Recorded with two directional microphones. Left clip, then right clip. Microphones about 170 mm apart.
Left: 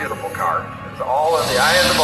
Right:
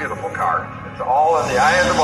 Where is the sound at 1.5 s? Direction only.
50° right (ahead or behind).